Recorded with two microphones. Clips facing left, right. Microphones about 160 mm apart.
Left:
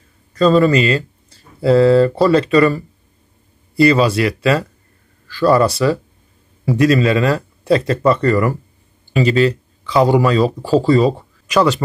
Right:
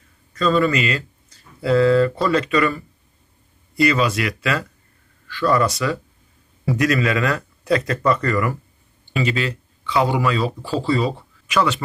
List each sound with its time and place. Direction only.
0.3 s speech: 35° left (ahead or behind)